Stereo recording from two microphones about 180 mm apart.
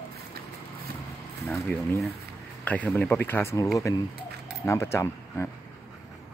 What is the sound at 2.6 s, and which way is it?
Speech, 10° left (ahead or behind).